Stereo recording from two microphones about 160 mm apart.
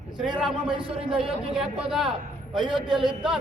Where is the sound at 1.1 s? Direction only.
5° right (ahead or behind).